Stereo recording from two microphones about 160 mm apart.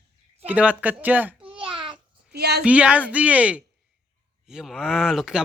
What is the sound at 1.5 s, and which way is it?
Babbling, 30° right (ahead or behind).